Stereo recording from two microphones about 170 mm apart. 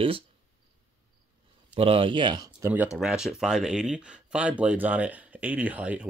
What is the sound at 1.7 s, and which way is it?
Speech, 30° right (ahead or behind).